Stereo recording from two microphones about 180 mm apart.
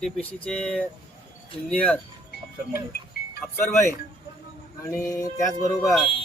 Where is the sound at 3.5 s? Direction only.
15° left (ahead or behind).